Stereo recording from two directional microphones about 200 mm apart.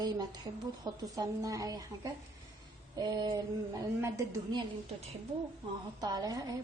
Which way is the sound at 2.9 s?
20° right (ahead or behind).